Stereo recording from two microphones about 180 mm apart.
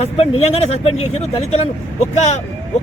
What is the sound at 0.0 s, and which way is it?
A man's voice, 35° left (ahead or behind).